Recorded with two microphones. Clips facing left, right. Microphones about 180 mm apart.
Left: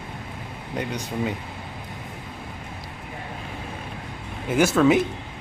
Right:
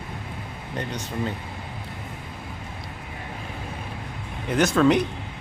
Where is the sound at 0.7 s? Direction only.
10° left (ahead or behind).